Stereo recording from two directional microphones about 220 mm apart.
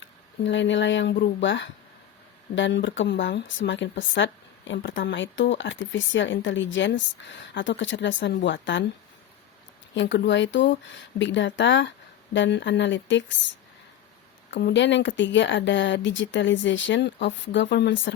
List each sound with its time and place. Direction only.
0.0 s a woman's voice: 55° left (ahead or behind)
9.9 s a woman's voice: 55° left (ahead or behind)
14.7 s a woman's voice: 55° left (ahead or behind)